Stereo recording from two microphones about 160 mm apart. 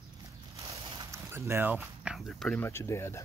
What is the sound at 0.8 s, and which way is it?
Zipper, 35° right (ahead or behind).